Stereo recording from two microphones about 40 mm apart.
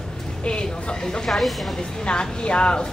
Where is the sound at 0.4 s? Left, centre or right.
Left.